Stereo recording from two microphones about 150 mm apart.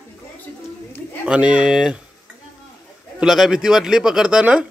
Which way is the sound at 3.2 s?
5° right (ahead or behind).